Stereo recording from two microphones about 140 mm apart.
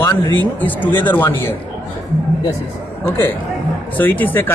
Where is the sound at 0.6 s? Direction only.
15° left (ahead or behind).